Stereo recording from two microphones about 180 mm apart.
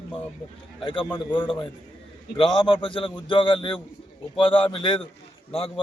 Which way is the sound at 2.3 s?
30° left (ahead or behind).